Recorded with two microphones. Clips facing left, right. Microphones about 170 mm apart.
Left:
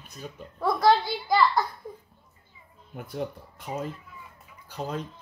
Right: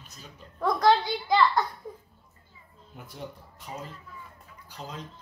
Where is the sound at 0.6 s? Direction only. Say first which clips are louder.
Left 1 dB; 5° left (ahead or behind).